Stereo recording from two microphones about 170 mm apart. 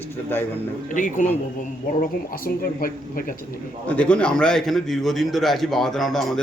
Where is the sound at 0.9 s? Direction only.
50° left (ahead or behind).